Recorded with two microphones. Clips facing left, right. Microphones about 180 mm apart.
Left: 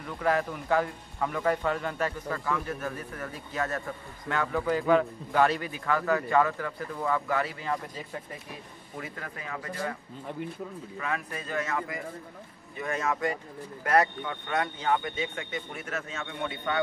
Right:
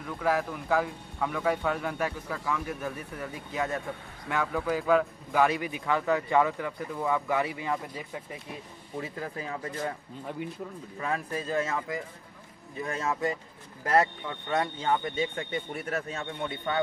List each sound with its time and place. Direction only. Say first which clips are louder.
0.0 s a man's voice: left 1 dB; 5° right (ahead or behind)
8.9 s speech: right 4 dB; 25° right (ahead or behind)
11.0 s a man's voice: right 3 dB; 35° right (ahead or behind)
14.5 s a man's voice: right 1 dB; 30° right (ahead or behind)